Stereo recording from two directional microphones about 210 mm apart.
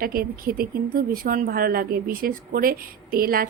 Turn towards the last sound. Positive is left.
turn(degrees=-45)  # may be behind; listen again after turning